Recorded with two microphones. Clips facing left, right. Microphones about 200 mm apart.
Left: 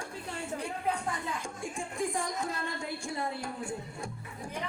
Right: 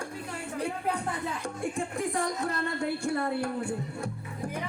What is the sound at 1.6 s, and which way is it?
Speech, 60° right (ahead or behind).